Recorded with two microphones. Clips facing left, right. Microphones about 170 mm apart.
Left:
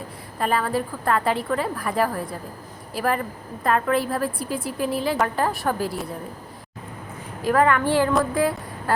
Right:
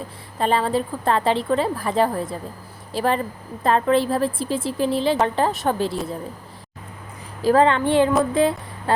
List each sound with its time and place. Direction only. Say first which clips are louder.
0.3 s a woman's voice: right 3 dB; 25° right (ahead or behind)
7.4 s a woman's voice: right 3 dB; 25° right (ahead or behind)